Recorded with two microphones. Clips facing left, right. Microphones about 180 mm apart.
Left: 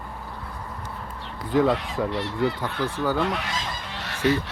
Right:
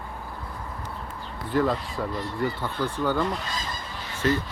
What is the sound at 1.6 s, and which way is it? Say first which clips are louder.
Speech: left 4 dB; 80° left.